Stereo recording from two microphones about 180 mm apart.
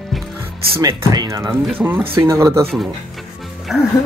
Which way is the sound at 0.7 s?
15° right (ahead or behind).